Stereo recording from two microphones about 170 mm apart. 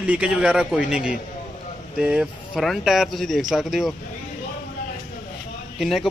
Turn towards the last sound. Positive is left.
turn(degrees=0)  # may be behind; listen again after turning